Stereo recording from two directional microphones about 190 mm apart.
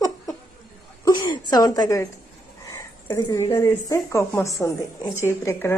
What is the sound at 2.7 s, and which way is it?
A woman's voice, 20° left (ahead or behind).